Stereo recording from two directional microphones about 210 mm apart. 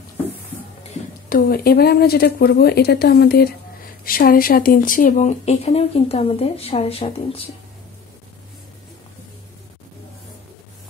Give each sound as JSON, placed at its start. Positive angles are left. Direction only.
{"t": 1.3, "sound": "speech", "side_deg": 45}